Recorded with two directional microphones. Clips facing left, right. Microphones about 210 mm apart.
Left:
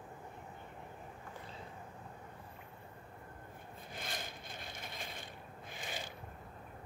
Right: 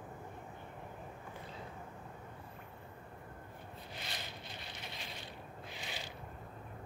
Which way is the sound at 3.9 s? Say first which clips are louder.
Left 3 dB; 50° left (ahead or behind).